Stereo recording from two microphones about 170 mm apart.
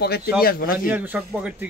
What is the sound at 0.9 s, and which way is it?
Speech, 10° right (ahead or behind).